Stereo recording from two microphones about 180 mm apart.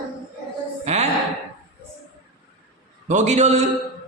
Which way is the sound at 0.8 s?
40° right (ahead or behind).